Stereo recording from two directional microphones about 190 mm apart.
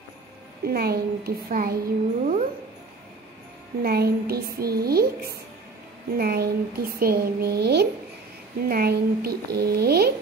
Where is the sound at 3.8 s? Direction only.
55° right (ahead or behind).